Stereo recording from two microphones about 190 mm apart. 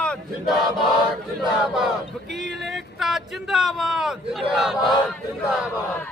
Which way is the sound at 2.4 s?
Centre (ahead or behind).